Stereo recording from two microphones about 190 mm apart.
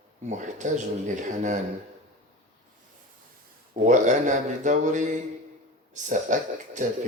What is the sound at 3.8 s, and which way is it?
A man's voice, 40° right (ahead or behind).